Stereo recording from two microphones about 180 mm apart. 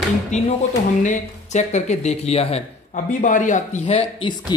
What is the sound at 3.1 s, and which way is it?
Speech, 45° left (ahead or behind).